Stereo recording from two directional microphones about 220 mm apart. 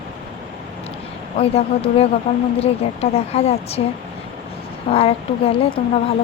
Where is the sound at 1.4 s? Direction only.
25° left (ahead or behind).